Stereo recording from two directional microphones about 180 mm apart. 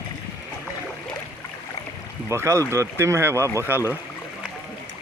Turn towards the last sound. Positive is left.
turn(degrees=-15)  # may be behind; listen again after turning